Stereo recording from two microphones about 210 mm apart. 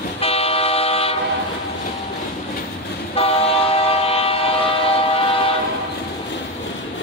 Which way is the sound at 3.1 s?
25° left (ahead or behind).